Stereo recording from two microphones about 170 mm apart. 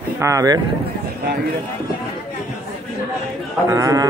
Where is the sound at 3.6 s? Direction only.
20° right (ahead or behind).